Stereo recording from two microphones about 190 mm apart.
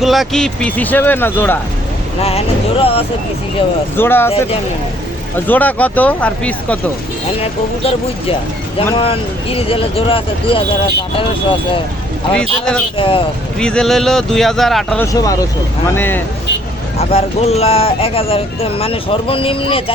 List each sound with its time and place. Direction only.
0.0 s speech: centre (ahead or behind)
2.2 s speech: 30° left (ahead or behind)
3.9 s speech: 10° left (ahead or behind)
5.5 s speech: 10° left (ahead or behind)
7.4 s speech: 30° left (ahead or behind)
12.3 s speech: 5° left (ahead or behind)
13.0 s speech: 30° left (ahead or behind)
13.6 s speech: 5° left (ahead or behind)
15.0 s speech: 20° left (ahead or behind)
17.0 s speech: 35° left (ahead or behind)